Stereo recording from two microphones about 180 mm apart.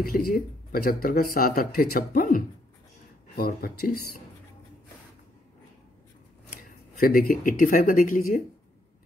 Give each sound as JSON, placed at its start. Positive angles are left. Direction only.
{"t": 0.0, "sound": "speech", "side_deg": 55}
{"t": 7.0, "sound": "speech", "side_deg": 55}